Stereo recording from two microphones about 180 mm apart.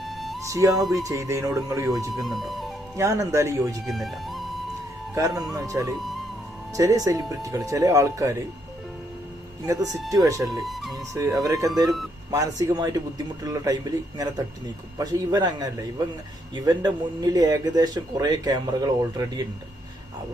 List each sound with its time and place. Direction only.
0.0 s music: centre (ahead or behind)
0.4 s speech: 15° right (ahead or behind)
0.7 s speech: centre (ahead or behind)
1.0 s speech: 15° right (ahead or behind)
2.1 s speech: centre (ahead or behind)
2.9 s speech: 15° right (ahead or behind)
3.8 s speech: centre (ahead or behind)
5.1 s speech: 20° right (ahead or behind)
10.1 s speech: 20° right (ahead or behind)
10.4 s speech: centre (ahead or behind)
10.9 s speech: 20° right (ahead or behind)